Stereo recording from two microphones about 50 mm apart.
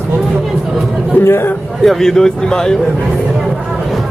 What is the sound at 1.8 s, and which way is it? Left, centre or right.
Speech, centre.